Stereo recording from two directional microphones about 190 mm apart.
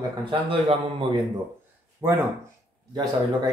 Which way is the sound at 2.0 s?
15° right (ahead or behind).